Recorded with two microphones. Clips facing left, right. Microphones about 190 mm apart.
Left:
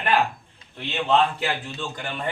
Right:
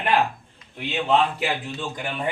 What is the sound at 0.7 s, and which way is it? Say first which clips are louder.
A man's voice: even; 10° right (ahead or behind).